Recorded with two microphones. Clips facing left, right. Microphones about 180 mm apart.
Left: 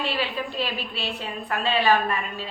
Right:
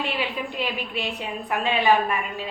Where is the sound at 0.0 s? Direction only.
20° right (ahead or behind).